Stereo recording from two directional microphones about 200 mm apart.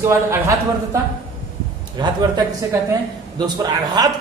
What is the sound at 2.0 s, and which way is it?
Speech, 20° right (ahead or behind).